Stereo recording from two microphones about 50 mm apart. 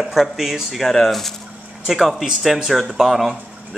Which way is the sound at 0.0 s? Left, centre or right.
Centre.